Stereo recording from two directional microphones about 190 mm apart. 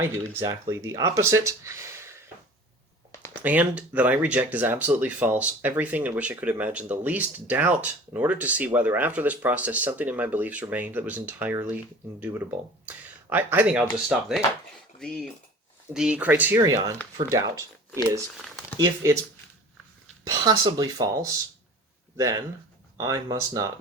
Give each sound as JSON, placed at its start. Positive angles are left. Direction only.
{"t": 0.3, "sound": "speech", "side_deg": -15}
{"t": 3.4, "sound": "speech", "side_deg": -10}
{"t": 18.4, "sound": "a sound", "side_deg": 5}
{"t": 20.2, "sound": "speech", "side_deg": -20}